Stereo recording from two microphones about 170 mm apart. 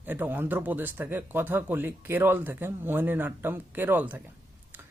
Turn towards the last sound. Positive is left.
turn(degrees=-10)  # may be behind; listen again after turning